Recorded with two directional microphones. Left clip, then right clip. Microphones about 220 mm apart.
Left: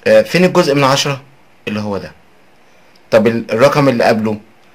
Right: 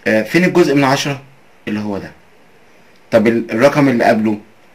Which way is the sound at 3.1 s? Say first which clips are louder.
Left 2 dB; 50° left (ahead or behind).